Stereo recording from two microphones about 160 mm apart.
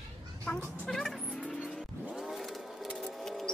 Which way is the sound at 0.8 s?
5° left (ahead or behind).